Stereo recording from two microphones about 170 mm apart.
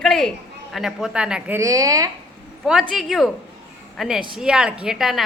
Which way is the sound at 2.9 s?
Centre (ahead or behind).